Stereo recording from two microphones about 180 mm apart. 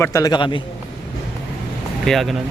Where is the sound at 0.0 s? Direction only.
15° left (ahead or behind).